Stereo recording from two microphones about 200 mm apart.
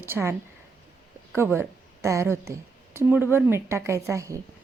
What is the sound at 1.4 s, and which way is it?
A woman's voice, 10° right (ahead or behind).